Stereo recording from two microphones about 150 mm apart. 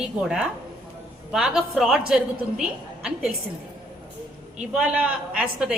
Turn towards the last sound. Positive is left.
turn(degrees=-5)  # may be behind; listen again after turning